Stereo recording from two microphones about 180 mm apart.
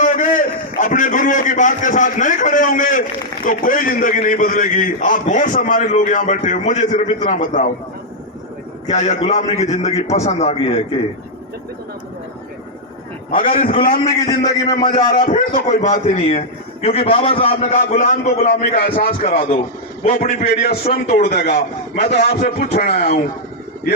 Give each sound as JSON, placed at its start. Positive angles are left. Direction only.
{"t": 0.0, "sound": "a man's voice", "side_deg": 45}
{"t": 8.9, "sound": "a man's voice", "side_deg": 40}
{"t": 14.0, "sound": "a man's voice", "side_deg": 20}
{"t": 15.1, "sound": "a man's voice", "side_deg": 45}
{"t": 17.7, "sound": "a man's voice", "side_deg": 45}